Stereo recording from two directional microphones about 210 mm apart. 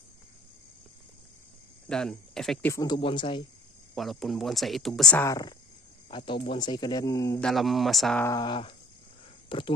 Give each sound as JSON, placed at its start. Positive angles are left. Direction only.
{"t": 1.9, "sound": "speech", "side_deg": 0}
{"t": 2.7, "sound": "speech", "side_deg": 20}
{"t": 3.9, "sound": "speech", "side_deg": 0}
{"t": 5.2, "sound": "speech", "side_deg": 15}
{"t": 7.3, "sound": "speech", "side_deg": 0}
{"t": 8.3, "sound": "speech", "side_deg": 20}